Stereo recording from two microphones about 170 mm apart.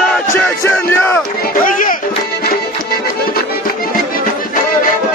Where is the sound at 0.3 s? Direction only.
10° left (ahead or behind).